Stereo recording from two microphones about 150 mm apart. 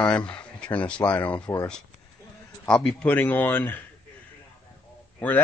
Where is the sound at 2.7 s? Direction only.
5° left (ahead or behind).